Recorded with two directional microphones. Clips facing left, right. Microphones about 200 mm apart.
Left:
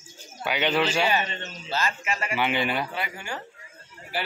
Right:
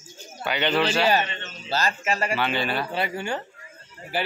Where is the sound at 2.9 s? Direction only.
30° right (ahead or behind).